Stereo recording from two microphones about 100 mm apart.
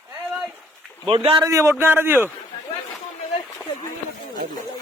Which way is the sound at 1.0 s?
65° right (ahead or behind).